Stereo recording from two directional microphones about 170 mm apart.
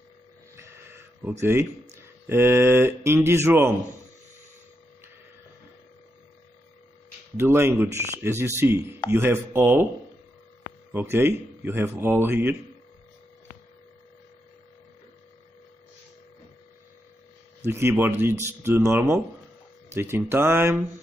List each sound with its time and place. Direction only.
0.6 s a sound: 15° right (ahead or behind)
1.4 s speech: 15° right (ahead or behind)
7.3 s speech: 15° right (ahead or behind)
10.9 s speech: 15° right (ahead or behind)
17.6 s speech: 15° right (ahead or behind)